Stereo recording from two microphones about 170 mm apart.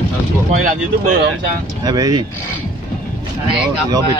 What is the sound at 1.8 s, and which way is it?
Speech, 25° right (ahead or behind).